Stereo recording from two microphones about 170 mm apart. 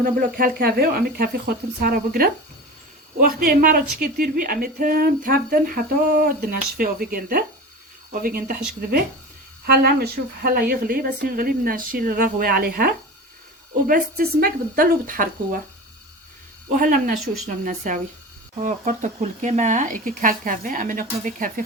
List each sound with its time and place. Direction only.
0.0 s speech: 55° right (ahead or behind)
16.7 s speech: 55° right (ahead or behind)